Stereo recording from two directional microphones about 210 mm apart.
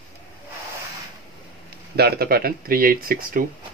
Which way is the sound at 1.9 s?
50° right (ahead or behind).